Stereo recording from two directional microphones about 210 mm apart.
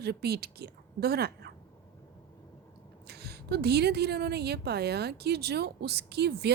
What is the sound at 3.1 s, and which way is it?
Speech, 50° right (ahead or behind).